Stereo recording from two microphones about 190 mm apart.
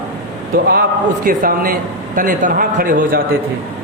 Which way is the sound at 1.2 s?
45° right (ahead or behind).